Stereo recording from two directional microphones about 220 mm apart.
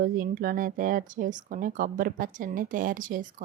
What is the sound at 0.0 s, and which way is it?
Speech, 40° right (ahead or behind).